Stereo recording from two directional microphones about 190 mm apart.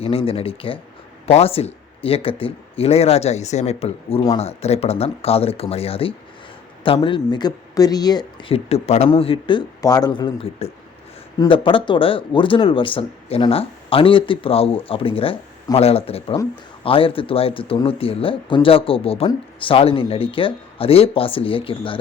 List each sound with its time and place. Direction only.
0.0 s speech: 30° left (ahead or behind)